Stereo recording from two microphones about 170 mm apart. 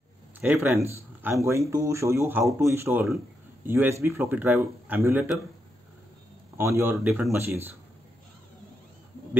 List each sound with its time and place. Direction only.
0.4 s speech: 15° right (ahead or behind)
6.6 s speech: 15° right (ahead or behind)
7.1 s speech: centre (ahead or behind)